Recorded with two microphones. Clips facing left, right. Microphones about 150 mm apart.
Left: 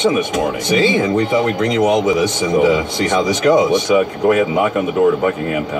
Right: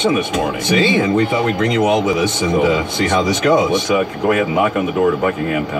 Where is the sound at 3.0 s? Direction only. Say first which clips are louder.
Right 1 dB; 20° left (ahead or behind).